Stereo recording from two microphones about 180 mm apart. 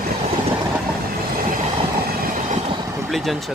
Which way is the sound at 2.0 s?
50° right (ahead or behind).